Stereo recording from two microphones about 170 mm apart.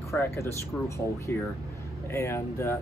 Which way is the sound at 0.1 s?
15° left (ahead or behind).